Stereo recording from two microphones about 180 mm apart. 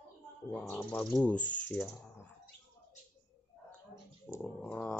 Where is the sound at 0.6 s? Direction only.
10° left (ahead or behind).